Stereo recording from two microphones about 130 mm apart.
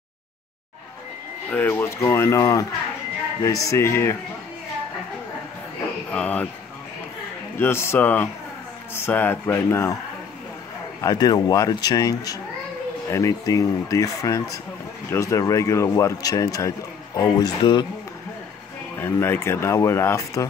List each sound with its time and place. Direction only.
1.5 s speech: 15° left (ahead or behind)
6.1 s speech: 10° left (ahead or behind)
7.5 s a man's voice: 15° left (ahead or behind)
11.0 s speech: 30° left (ahead or behind)
18.9 s speech: 20° left (ahead or behind)